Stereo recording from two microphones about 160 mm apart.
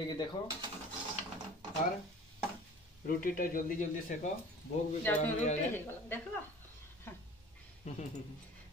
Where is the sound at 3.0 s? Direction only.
65° left (ahead or behind).